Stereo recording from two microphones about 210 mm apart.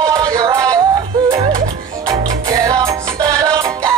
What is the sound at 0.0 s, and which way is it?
Music, 15° right (ahead or behind).